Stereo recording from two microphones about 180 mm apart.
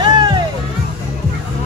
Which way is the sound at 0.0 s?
25° right (ahead or behind).